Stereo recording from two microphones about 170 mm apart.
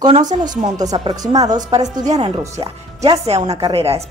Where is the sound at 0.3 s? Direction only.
25° right (ahead or behind).